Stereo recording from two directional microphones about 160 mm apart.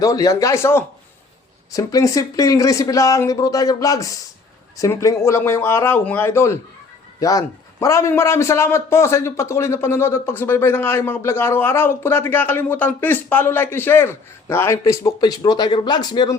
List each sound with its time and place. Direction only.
0.0 s a man's voice: 20° left (ahead or behind)